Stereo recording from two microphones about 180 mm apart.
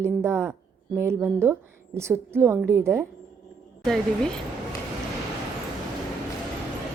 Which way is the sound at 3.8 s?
5° left (ahead or behind).